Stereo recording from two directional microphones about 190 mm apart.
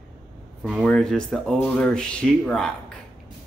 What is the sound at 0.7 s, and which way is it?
Speech, centre (ahead or behind).